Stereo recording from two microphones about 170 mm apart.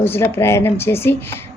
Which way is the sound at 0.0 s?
15° left (ahead or behind).